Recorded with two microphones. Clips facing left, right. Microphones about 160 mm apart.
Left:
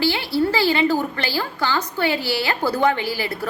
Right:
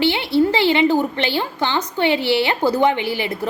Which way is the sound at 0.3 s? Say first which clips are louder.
Right 4 dB; 20° right (ahead or behind).